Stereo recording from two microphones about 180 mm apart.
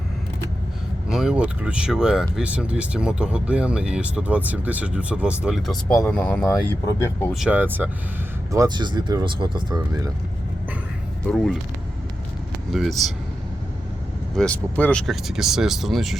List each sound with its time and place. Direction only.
1.0 s speech: 5° right (ahead or behind); by 7.3 s 15° left (ahead or behind)
7.3 s speech: 5° right (ahead or behind)
8.5 s speech: 25° right (ahead or behind)
11.3 s speech: centre (ahead or behind)
12.7 s speech: centre (ahead or behind)
14.3 s speech: 5° left (ahead or behind)